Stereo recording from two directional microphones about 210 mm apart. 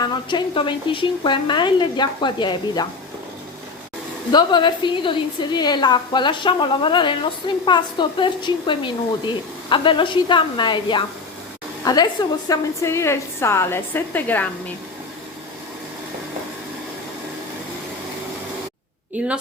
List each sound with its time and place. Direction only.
0.0 s a woman's voice: 20° left (ahead or behind)
4.3 s a woman's voice: 20° left (ahead or behind)
19.2 s a woman's voice: 5° right (ahead or behind)